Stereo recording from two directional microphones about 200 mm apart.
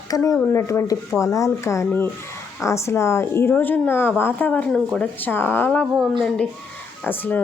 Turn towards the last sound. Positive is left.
turn(degrees=10)  # may be behind; listen again after turning